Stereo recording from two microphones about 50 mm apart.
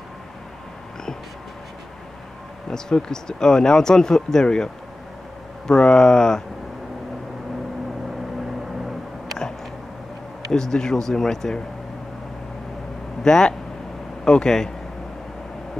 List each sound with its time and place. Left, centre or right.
2.7 s speech: centre
5.7 s speech: centre
10.5 s speech: centre
13.2 s speech: centre